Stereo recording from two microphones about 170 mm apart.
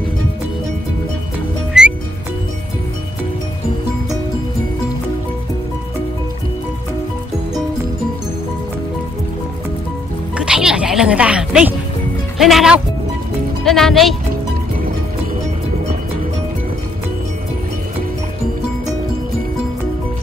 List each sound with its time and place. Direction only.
1.7 s music: 5° right (ahead or behind)
10.3 s music: 5° right (ahead or behind)
12.4 s speech: centre (ahead or behind)